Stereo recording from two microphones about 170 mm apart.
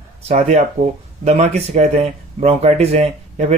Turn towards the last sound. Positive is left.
turn(degrees=-40)  # may be behind; listen again after turning